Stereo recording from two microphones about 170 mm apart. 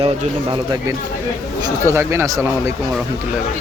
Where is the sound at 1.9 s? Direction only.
15° right (ahead or behind).